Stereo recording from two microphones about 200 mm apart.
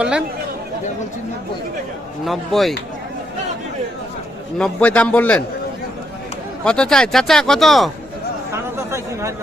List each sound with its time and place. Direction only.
0.0 s speech: 5° right (ahead or behind)
2.2 s speech: centre (ahead or behind)
4.5 s a man's voice: 5° left (ahead or behind)
6.7 s speech: 5° left (ahead or behind)
8.5 s a sound: 15° right (ahead or behind)